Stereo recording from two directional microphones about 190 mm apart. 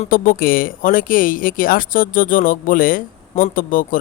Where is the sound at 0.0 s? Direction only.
50° left (ahead or behind).